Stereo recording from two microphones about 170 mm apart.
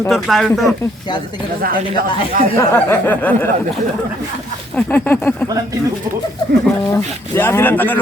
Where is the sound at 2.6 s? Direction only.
10° left (ahead or behind).